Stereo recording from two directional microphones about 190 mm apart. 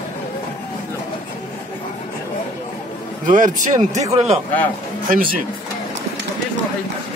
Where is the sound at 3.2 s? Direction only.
45° right (ahead or behind).